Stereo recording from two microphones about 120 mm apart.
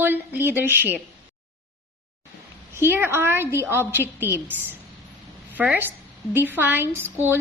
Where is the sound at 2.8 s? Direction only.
20° right (ahead or behind).